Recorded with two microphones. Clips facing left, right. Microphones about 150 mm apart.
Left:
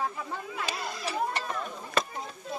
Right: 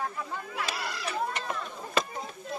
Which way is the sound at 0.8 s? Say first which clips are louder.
Even; 75° right (ahead or behind).